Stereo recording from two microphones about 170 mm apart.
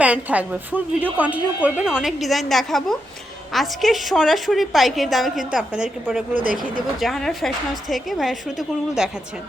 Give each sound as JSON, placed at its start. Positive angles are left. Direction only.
{"t": 0.0, "sound": "a woman's voice", "side_deg": -10}
{"t": 6.3, "sound": "speech", "side_deg": -55}
{"t": 7.0, "sound": "a woman's voice", "side_deg": 0}